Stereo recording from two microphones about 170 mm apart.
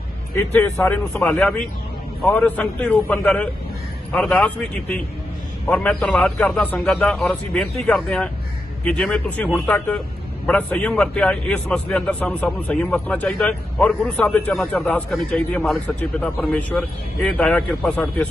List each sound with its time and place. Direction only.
0.6 s a man's voice: 10° left (ahead or behind)